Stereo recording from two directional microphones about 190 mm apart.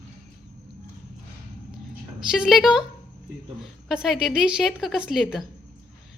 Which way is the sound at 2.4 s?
Centre (ahead or behind).